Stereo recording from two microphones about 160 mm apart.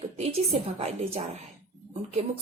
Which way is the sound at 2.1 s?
35° right (ahead or behind).